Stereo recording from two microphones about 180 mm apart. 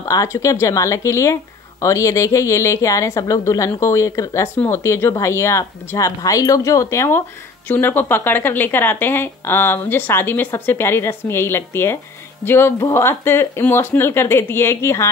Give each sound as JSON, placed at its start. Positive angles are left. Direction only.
{"t": 0.0, "sound": "speech", "side_deg": 15}